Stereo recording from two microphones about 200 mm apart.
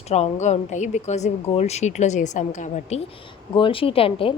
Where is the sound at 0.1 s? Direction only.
35° left (ahead or behind).